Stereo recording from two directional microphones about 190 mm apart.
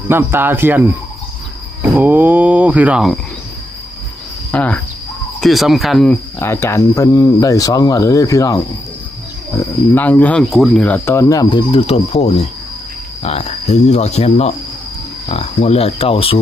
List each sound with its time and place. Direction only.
0.1 s speech: 10° right (ahead or behind)
4.5 s speech: 5° left (ahead or behind)
6.4 s speech: 15° left (ahead or behind)
9.9 s speech: 10° left (ahead or behind)
11.7 s speech: 30° left (ahead or behind)